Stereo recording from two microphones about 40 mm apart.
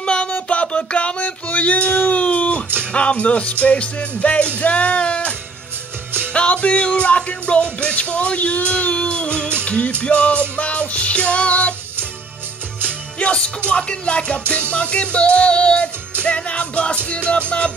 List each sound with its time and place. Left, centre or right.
0.0 s a sound: left
2.8 s speech: left
3.6 s music: left
6.3 s music: left
13.2 s music: left
13.7 s speech: left
14.7 s music: left